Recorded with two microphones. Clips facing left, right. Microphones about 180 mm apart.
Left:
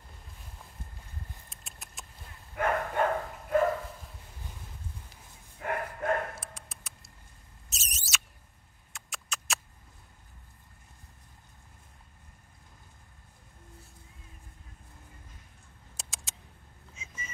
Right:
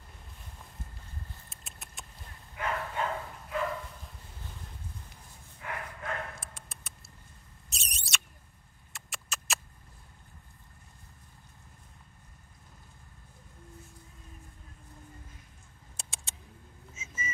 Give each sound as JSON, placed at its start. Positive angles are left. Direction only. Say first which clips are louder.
{"t": 1.5, "sound": "rodents", "louder": "even", "side_deg": 0}
{"t": 2.5, "sound": "dog", "louder": "left 5 dB", "side_deg": 50}
{"t": 5.6, "sound": "bow-wow", "louder": "left 7 dB", "side_deg": 50}
{"t": 6.4, "sound": "a sound", "louder": "left 2 dB", "side_deg": 0}
{"t": 8.9, "sound": "rodents", "louder": "left 1 dB", "side_deg": 0}
{"t": 16.0, "sound": "a sound", "louder": "left 1 dB", "side_deg": 0}
{"t": 16.9, "sound": "whistling", "louder": "right 5 dB", "side_deg": -5}